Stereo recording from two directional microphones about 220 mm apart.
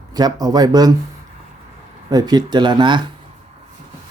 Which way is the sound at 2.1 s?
15° right (ahead or behind).